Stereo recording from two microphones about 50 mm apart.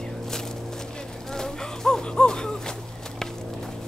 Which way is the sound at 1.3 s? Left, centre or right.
Centre.